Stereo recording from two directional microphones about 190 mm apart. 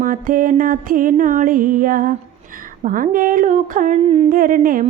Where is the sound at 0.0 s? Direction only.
45° right (ahead or behind).